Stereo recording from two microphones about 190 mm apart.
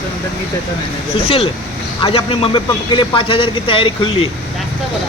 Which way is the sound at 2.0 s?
30° left (ahead or behind).